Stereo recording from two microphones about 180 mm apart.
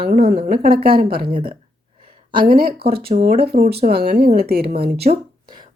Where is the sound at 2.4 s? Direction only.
55° right (ahead or behind).